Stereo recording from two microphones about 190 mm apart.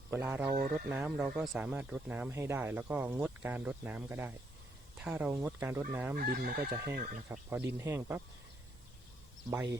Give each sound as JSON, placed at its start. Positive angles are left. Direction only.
{"t": 0.1, "sound": "speech", "side_deg": -10}
{"t": 0.5, "sound": "chicken", "side_deg": -50}
{"t": 0.9, "sound": "speech", "side_deg": -10}
{"t": 6.1, "sound": "chicken", "side_deg": -50}
{"t": 6.9, "sound": "speech", "side_deg": -40}
{"t": 7.3, "sound": "speech", "side_deg": -10}